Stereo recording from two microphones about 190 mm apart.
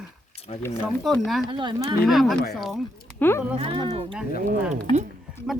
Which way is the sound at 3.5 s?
30° right (ahead or behind).